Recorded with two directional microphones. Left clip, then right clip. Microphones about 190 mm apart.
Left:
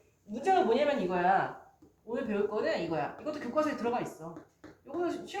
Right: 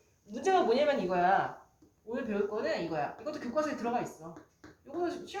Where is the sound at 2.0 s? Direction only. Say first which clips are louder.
Left 1 dB; 15° right (ahead or behind).